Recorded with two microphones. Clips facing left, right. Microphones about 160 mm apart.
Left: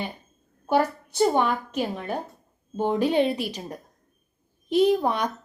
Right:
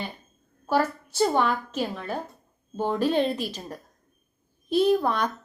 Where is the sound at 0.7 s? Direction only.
15° left (ahead or behind).